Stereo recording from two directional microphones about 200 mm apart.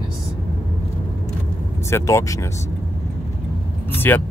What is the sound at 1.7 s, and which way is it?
Speech, 15° left (ahead or behind).